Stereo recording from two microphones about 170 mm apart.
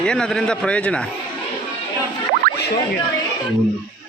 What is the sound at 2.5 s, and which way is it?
Music, 60° right (ahead or behind).